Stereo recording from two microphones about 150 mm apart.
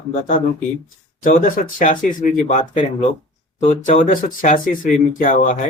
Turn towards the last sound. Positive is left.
turn(degrees=60)  # may be behind; listen again after turning